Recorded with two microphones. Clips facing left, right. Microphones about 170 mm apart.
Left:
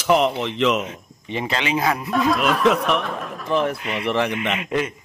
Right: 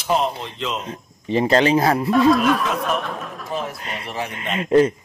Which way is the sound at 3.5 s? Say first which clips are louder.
Left 7 dB; 70° left (ahead or behind).